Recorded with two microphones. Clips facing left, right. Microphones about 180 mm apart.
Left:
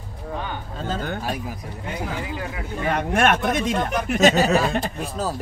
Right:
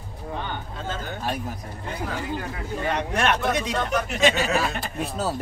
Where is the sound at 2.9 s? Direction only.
50° left (ahead or behind).